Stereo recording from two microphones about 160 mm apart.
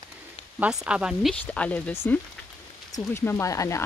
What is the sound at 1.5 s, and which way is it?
Speech, 10° left (ahead or behind).